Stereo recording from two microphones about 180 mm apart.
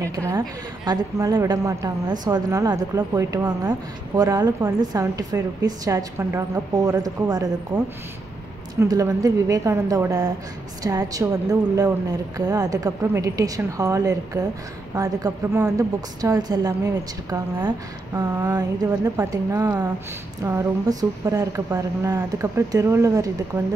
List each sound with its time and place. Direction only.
0.0 s a woman's voice: 15° right (ahead or behind)
8.7 s a woman's voice: 20° right (ahead or behind)